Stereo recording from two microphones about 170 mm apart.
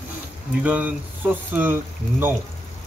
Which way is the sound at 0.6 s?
10° right (ahead or behind).